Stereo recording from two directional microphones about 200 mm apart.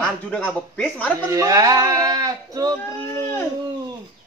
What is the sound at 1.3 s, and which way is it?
Speech, 15° right (ahead or behind).